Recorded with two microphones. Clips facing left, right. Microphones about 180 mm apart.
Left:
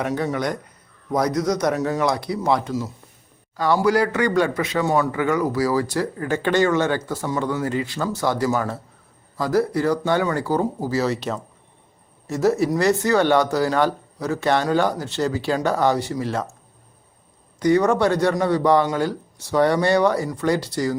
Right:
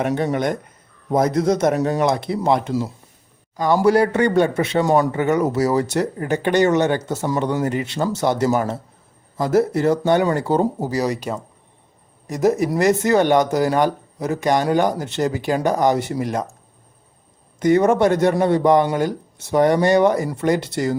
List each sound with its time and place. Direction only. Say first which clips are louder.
0.0 s speech: right 3 dB; 25° right (ahead or behind)
17.6 s speech: right 2 dB; 20° right (ahead or behind)